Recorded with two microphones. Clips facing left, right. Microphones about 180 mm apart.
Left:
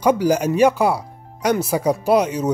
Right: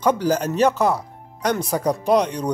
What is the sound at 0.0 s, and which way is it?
Speech, 10° left (ahead or behind).